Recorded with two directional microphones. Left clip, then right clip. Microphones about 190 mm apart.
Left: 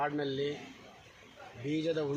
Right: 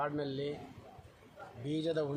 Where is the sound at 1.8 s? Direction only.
25° right (ahead or behind).